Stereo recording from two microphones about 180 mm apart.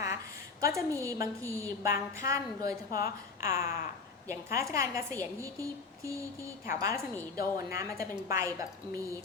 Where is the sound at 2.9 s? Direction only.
55° left (ahead or behind).